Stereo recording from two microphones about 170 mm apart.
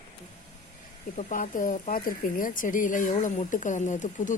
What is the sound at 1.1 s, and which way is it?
Speech, 50° left (ahead or behind).